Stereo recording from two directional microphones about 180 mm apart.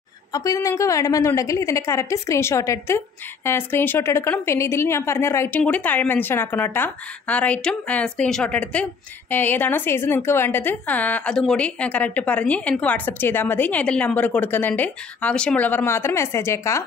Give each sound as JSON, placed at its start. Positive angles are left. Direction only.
{"t": 0.3, "sound": "a woman's voice", "side_deg": 20}